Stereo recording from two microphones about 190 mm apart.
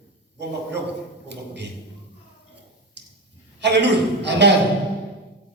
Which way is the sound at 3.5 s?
65° right (ahead or behind).